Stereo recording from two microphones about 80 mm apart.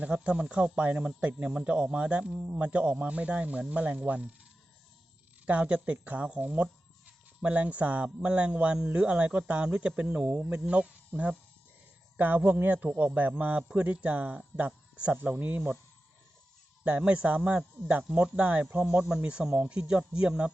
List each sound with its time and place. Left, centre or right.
0.0 s speech: centre
5.5 s speech: centre
12.1 s speech: right
16.8 s speech: centre